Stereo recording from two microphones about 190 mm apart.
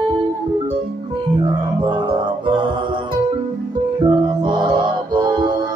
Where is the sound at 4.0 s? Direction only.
25° right (ahead or behind).